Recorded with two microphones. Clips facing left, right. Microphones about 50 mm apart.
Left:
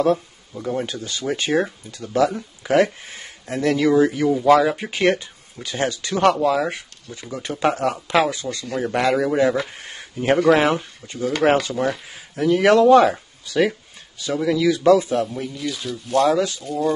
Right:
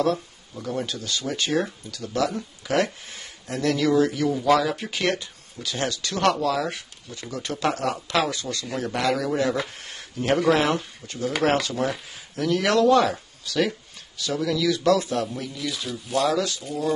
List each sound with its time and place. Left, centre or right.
0.0 s speech: centre
11.7 s speech: centre
12.1 s speech: centre
15.5 s speech: centre
16.3 s speech: left
16.6 s speech: centre